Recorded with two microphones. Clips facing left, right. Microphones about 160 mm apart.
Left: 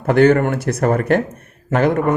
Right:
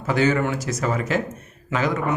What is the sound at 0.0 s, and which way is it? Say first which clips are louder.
Speech: left 8 dB; 60° left (ahead or behind).